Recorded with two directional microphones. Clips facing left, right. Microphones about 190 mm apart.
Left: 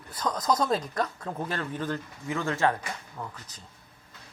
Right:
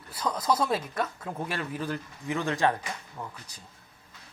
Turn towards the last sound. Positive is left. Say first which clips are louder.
# left 1 dB
turn(degrees=-10)  # may be behind; listen again after turning